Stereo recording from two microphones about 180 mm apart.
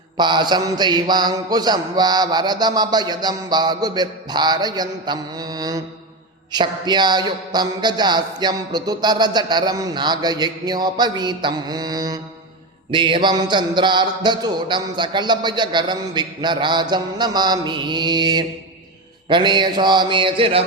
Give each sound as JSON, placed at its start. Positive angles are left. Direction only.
{"t": 0.2, "sound": "a man's voice", "side_deg": -25}